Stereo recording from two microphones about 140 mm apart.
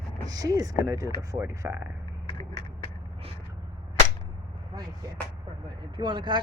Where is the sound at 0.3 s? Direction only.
25° right (ahead or behind).